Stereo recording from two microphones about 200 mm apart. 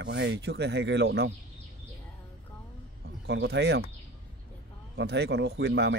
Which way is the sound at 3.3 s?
55° right (ahead or behind).